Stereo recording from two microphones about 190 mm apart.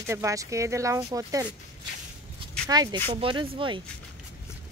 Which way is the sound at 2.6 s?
20° right (ahead or behind).